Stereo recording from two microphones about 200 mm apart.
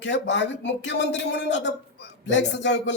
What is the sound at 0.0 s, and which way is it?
Speech, 60° left (ahead or behind).